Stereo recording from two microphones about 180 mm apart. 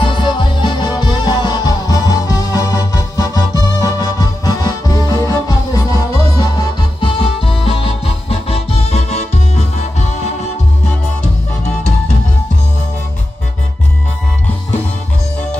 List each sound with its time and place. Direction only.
0.0 s music: 25° left (ahead or behind)
7.0 s music: 30° left (ahead or behind)